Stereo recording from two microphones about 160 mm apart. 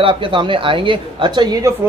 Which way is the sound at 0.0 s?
30° right (ahead or behind).